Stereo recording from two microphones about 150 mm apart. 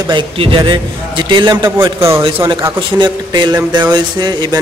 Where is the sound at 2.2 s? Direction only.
35° right (ahead or behind).